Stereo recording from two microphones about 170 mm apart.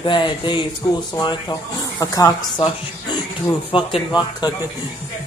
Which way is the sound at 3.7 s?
30° left (ahead or behind).